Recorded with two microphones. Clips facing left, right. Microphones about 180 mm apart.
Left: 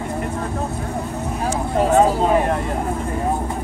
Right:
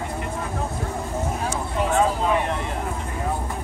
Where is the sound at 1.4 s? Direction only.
40° left (ahead or behind).